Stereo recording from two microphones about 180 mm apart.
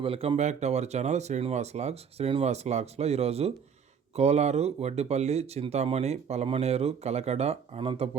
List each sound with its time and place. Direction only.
0.0 s speech: 30° right (ahead or behind)